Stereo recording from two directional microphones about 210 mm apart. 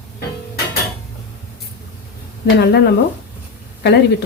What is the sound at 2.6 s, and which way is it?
Speech, 55° left (ahead or behind).